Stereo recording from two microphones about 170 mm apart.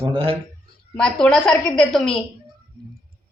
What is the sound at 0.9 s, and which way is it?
A woman's voice, 5° left (ahead or behind).